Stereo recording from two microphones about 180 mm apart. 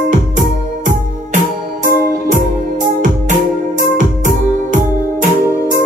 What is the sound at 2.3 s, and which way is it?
Music, 45° right (ahead or behind).